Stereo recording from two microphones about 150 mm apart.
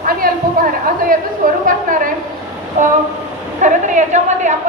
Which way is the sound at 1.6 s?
65° right (ahead or behind).